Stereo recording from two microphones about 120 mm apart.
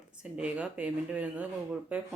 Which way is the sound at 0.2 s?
10° right (ahead or behind).